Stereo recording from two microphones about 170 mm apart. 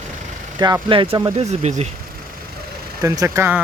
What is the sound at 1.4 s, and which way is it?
Speech, 40° right (ahead or behind).